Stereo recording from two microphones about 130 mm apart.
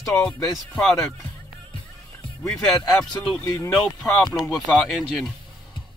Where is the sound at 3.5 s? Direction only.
15° left (ahead or behind).